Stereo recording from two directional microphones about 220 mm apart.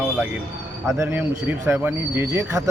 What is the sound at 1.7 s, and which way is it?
Speech, 10° right (ahead or behind).